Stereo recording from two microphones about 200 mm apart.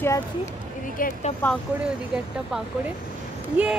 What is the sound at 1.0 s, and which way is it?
Speech, 40° left (ahead or behind).